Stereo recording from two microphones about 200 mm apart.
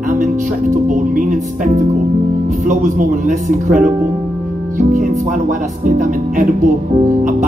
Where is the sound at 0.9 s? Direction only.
40° right (ahead or behind).